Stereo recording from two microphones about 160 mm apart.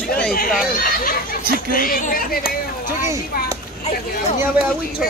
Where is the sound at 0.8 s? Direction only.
65° left (ahead or behind).